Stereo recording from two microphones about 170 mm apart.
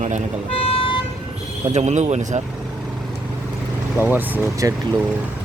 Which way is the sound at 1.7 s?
40° right (ahead or behind).